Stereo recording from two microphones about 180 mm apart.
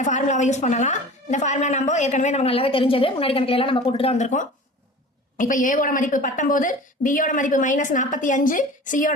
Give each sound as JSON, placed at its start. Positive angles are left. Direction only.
{"t": 0.0, "sound": "a woman's voice", "side_deg": 45}